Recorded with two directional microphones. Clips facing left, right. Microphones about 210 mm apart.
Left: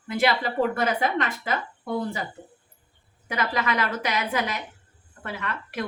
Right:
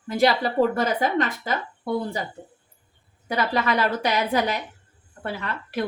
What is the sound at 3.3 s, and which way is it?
Speech, 35° right (ahead or behind).